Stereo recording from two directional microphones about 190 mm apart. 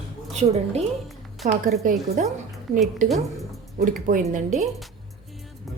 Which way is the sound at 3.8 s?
45° right (ahead or behind).